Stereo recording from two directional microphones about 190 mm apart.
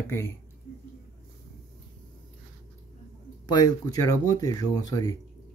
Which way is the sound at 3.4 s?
20° left (ahead or behind).